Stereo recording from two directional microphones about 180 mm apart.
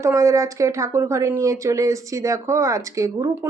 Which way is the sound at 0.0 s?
15° right (ahead or behind).